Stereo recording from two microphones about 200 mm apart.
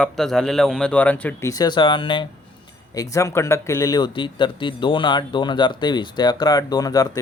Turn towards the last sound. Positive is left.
turn(degrees=20)  # may be behind; listen again after turning